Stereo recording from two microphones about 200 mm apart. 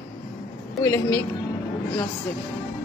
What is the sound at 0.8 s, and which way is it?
Speech, 15° left (ahead or behind).